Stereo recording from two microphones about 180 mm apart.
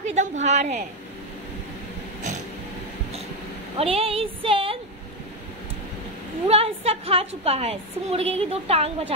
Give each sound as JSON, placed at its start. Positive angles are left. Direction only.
{"t": 0.0, "sound": "a woman's voice", "side_deg": -40}
{"t": 3.7, "sound": "a woman's voice", "side_deg": -35}
{"t": 6.4, "sound": "a woman's voice", "side_deg": -35}